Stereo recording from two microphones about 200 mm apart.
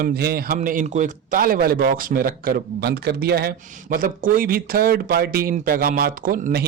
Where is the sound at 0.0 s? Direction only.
50° right (ahead or behind).